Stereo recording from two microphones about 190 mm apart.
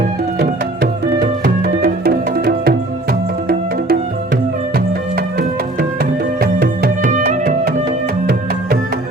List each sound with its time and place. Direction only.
1.2 s music: 55° right (ahead or behind)
6.4 s music: 50° right (ahead or behind)